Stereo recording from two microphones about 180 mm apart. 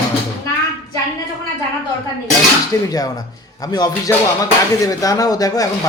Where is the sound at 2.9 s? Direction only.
20° left (ahead or behind).